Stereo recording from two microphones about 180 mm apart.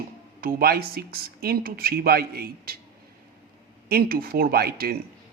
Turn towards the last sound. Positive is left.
turn(degrees=-60)  # may be behind; listen again after turning